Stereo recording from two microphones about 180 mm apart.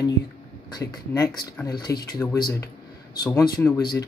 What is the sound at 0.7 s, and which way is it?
Speech, 20° left (ahead or behind).